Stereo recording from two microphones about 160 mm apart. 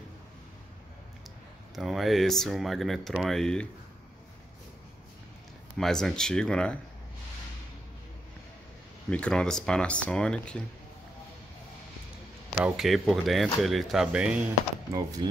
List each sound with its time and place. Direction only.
1.8 s speech: centre (ahead or behind)
5.8 s speech: 5° left (ahead or behind)
9.1 s speech: 5° left (ahead or behind)
12.6 s speech: centre (ahead or behind)
14.9 s speech: 20° right (ahead or behind)